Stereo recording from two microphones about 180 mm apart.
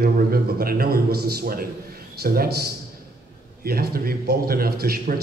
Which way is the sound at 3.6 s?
55° right (ahead or behind).